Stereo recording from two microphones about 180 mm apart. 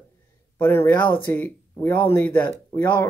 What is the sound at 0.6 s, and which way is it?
Speech, 10° left (ahead or behind).